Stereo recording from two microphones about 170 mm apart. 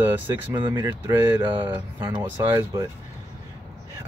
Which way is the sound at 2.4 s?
25° right (ahead or behind).